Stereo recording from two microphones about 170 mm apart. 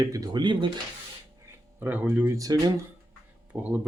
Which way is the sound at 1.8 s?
10° right (ahead or behind).